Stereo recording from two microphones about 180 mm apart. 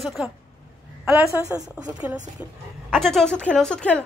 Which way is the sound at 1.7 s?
5° right (ahead or behind).